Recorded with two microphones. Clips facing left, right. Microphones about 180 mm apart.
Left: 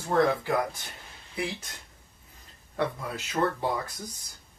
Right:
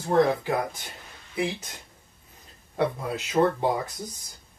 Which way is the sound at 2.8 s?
25° right (ahead or behind).